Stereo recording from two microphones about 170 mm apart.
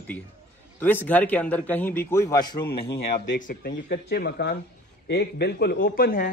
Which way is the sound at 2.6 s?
80° left.